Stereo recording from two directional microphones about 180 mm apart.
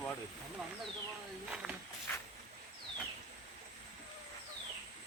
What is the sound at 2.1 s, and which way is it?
Vehicle, 10° left (ahead or behind).